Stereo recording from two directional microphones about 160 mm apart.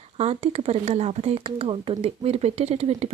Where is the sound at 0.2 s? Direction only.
40° right (ahead or behind).